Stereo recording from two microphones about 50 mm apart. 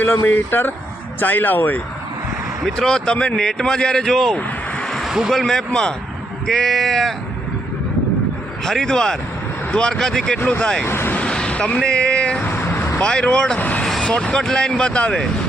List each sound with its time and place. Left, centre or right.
0.0 s speech: left
2.7 s speech: centre
4.8 s a sound: centre
5.0 s a sound: centre
5.3 s speech: centre
8.6 s speech: centre
10.8 s speech: left
11.3 s vehicle: centre
12.5 s vehicle: left
12.7 s vehicle: left
13.0 s speech: left
13.6 s speech: left
14.0 s speech: centre